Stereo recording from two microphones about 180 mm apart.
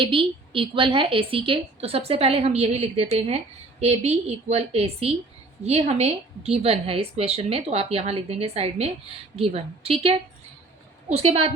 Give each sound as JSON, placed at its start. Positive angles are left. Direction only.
{"t": 0.0, "sound": "a woman's voice", "side_deg": -30}